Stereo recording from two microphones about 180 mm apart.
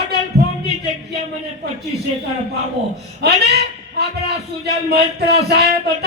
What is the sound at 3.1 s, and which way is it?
Speech, 65° right (ahead or behind).